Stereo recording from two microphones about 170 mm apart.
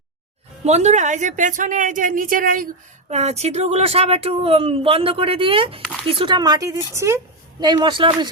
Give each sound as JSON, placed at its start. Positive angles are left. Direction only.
{"t": 0.6, "sound": "speech", "side_deg": -40}